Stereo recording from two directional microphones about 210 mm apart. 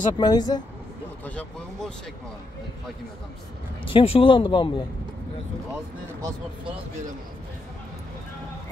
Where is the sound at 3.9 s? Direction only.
25° left (ahead or behind).